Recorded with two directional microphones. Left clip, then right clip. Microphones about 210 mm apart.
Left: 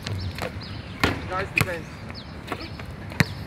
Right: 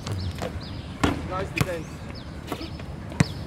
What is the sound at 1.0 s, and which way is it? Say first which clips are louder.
Basketball bounce: left 1 dB; 15° left (ahead or behind).